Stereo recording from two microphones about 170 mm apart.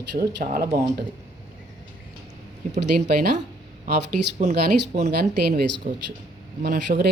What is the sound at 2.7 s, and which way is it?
A woman's voice, 75° right (ahead or behind).